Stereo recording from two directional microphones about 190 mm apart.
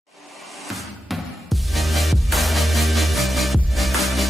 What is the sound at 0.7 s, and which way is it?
Music, centre (ahead or behind).